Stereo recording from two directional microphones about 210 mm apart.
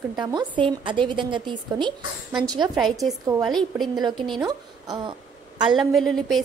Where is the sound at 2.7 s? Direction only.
Centre (ahead or behind).